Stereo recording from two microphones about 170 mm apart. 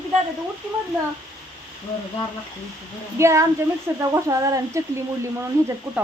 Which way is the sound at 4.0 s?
20° right (ahead or behind).